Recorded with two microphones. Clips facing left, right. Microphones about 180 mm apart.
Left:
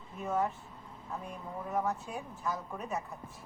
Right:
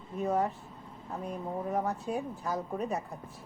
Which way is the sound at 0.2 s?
35° right (ahead or behind).